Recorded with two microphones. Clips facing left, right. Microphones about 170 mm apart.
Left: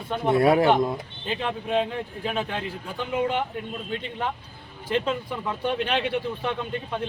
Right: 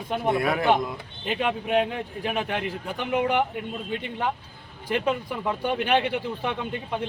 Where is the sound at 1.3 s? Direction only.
15° right (ahead or behind).